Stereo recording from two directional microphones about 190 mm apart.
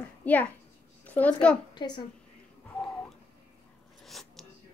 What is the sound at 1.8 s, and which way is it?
Speech, 25° left (ahead or behind).